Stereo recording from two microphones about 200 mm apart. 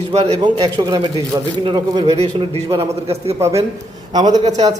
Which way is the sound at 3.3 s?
15° right (ahead or behind).